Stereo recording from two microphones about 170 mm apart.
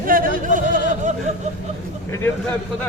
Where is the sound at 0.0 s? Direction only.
55° right (ahead or behind).